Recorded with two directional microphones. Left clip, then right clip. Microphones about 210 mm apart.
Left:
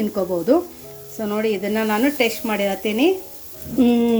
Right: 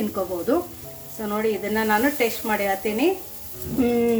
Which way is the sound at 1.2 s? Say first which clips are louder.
Left 2 dB; 40° left (ahead or behind).